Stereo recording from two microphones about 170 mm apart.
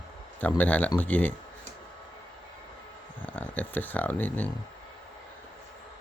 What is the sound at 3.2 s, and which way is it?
Speech, 10° left (ahead or behind).